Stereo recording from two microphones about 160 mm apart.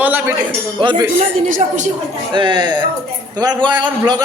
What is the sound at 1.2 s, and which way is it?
Speech, 55° right (ahead or behind).